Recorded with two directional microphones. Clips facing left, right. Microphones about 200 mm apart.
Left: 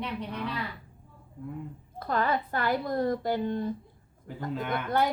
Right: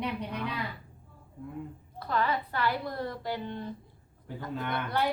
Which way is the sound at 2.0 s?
45° left (ahead or behind).